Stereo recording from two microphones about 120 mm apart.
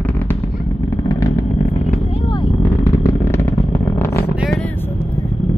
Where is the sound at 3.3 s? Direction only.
20° left (ahead or behind).